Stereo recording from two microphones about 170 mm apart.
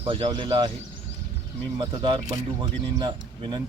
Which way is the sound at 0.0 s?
35° right (ahead or behind).